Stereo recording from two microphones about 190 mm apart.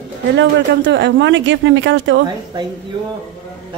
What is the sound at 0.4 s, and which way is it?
Speech, 70° right (ahead or behind).